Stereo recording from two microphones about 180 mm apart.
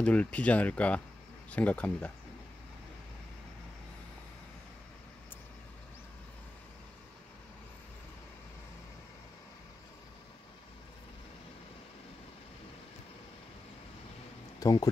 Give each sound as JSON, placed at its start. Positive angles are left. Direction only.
{"t": 0.0, "sound": "speech", "side_deg": 5}
{"t": 14.6, "sound": "speech", "side_deg": 20}